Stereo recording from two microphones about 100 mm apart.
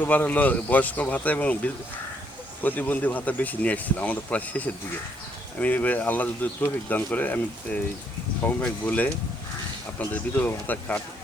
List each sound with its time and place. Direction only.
0.0 s speech: 20° left (ahead or behind)